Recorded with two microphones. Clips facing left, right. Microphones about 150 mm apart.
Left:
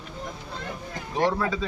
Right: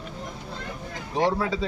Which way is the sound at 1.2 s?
10° right (ahead or behind).